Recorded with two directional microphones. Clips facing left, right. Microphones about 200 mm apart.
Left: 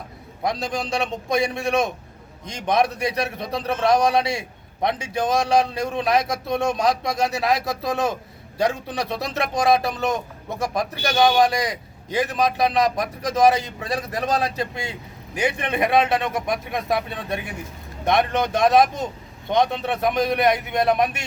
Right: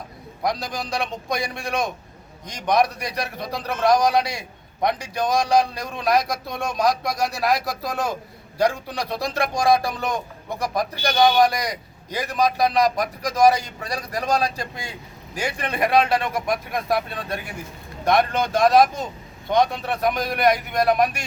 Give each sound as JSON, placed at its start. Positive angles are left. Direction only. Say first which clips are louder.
{"t": 0.4, "sound": "a man's voice", "louder": "left 1 dB", "side_deg": 25}